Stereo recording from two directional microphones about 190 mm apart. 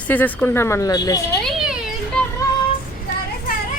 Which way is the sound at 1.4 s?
5° right (ahead or behind).